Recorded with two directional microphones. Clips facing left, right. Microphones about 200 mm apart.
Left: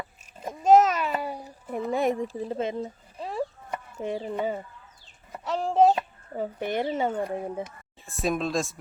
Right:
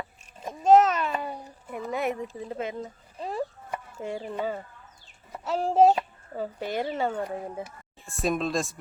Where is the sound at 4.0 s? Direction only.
20° left (ahead or behind).